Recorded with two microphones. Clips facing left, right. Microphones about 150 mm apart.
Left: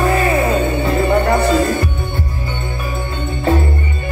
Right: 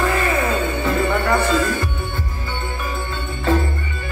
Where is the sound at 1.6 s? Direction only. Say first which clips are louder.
Left 5 dB; 45° left (ahead or behind).